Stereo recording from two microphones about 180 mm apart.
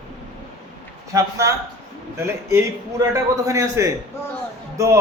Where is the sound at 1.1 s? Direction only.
15° right (ahead or behind).